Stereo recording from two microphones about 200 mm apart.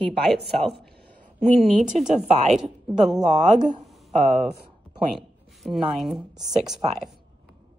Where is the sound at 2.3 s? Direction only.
35° right (ahead or behind).